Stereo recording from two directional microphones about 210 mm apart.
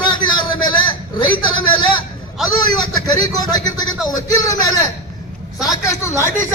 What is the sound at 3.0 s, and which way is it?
A man's voice, 20° left (ahead or behind).